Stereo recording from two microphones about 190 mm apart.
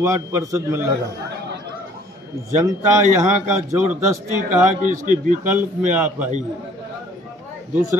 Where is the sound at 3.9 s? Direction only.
40° right (ahead or behind).